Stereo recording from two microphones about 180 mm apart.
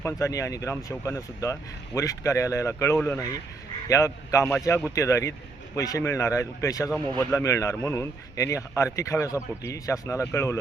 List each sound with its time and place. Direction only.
0.0 s a man's voice: 20° left (ahead or behind)